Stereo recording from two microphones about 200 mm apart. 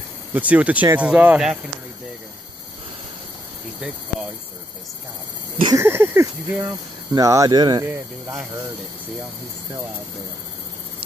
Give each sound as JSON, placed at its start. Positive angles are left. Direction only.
{"t": 0.3, "sound": "speech", "side_deg": -10}
{"t": 5.6, "sound": "speech", "side_deg": -15}